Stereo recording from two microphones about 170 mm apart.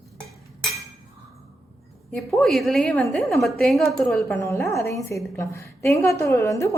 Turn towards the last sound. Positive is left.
turn(degrees=15)  # may be behind; listen again after turning